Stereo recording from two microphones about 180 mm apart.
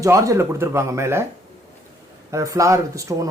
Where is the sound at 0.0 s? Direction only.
15° right (ahead or behind).